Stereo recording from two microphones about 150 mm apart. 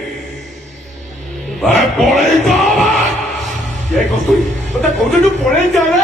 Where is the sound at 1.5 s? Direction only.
Centre (ahead or behind).